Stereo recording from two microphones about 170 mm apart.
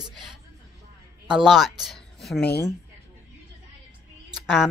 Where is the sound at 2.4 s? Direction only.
75° left (ahead or behind).